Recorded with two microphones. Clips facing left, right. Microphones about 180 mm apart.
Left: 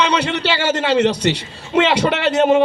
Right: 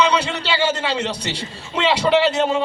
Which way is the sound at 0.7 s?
75° left (ahead or behind).